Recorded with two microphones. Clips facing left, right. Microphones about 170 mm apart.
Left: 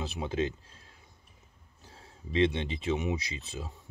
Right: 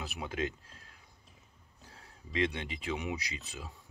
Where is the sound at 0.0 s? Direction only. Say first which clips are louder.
Left 5 dB; 25° left (ahead or behind).